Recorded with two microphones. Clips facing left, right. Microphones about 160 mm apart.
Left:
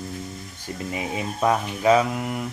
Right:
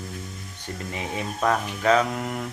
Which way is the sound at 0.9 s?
15° left (ahead or behind).